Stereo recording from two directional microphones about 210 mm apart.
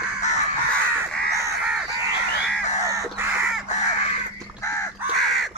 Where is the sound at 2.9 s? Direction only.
15° right (ahead or behind).